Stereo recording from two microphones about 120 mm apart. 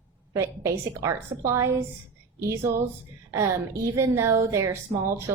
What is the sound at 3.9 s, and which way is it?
A woman's voice, 25° right (ahead or behind).